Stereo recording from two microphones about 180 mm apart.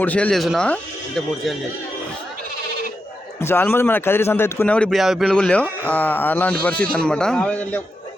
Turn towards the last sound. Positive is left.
turn(degrees=10)  # may be behind; listen again after turning